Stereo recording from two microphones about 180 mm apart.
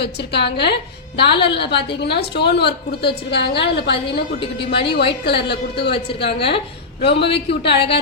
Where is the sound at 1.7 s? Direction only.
65° left (ahead or behind).